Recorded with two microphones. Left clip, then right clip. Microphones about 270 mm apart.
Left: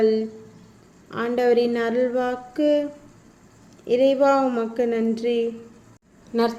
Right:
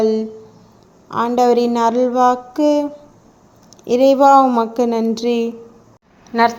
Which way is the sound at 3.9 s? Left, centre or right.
Right.